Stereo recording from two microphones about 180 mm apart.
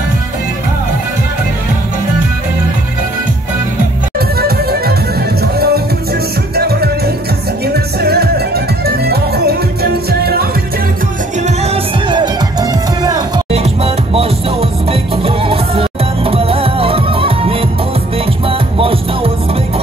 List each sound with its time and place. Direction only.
4.4 s music: 60° right (ahead or behind)
11.4 s music: 35° right (ahead or behind)
13.5 s music: 35° right (ahead or behind)